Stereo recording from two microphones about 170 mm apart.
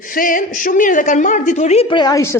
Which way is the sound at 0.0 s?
55° left (ahead or behind).